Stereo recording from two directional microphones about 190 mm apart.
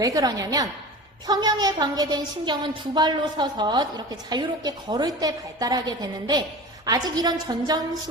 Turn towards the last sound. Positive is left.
turn(degrees=-20)  # may be behind; listen again after turning